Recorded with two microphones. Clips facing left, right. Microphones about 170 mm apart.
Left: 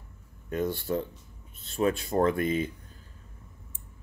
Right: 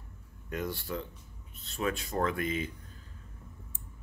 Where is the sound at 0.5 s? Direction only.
25° left (ahead or behind).